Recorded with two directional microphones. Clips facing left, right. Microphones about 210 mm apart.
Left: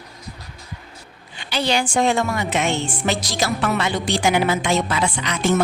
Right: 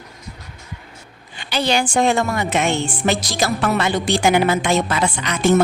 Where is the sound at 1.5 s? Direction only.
50° right (ahead or behind).